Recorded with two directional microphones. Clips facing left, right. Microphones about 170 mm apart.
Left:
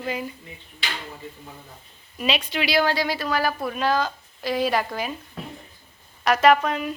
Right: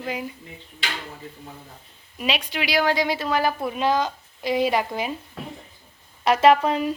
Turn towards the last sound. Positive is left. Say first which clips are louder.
# right 1 dB
turn(degrees=-30)  # may be behind; listen again after turning